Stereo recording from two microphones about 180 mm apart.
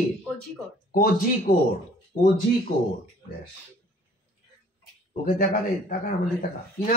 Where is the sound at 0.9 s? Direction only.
55° left (ahead or behind).